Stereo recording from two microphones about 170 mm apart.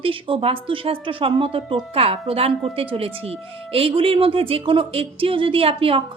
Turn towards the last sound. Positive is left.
turn(degrees=-35)  # may be behind; listen again after turning